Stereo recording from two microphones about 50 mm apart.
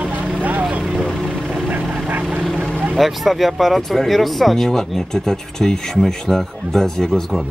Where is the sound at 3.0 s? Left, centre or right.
Centre.